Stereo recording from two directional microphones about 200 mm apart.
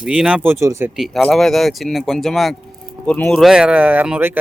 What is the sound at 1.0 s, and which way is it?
Speech, centre (ahead or behind).